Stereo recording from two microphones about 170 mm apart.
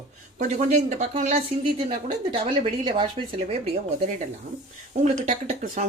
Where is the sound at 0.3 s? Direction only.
45° right (ahead or behind).